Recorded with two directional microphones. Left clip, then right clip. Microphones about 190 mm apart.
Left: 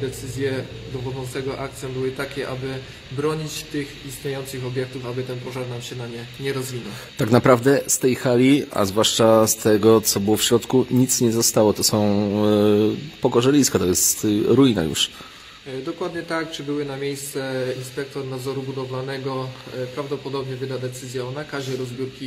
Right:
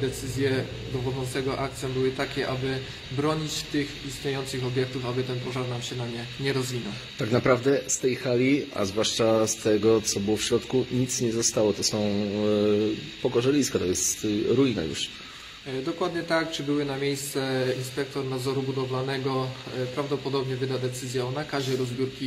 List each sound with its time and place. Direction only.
0.4 s speech: 5° left (ahead or behind)
7.2 s speech: 45° left (ahead or behind)
15.8 s speech: 5° left (ahead or behind)